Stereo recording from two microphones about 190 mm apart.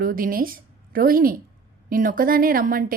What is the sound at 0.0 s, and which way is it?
A woman's voice, 45° right (ahead or behind).